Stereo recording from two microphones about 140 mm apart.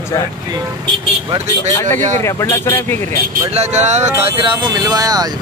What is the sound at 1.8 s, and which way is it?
Speech, 15° left (ahead or behind).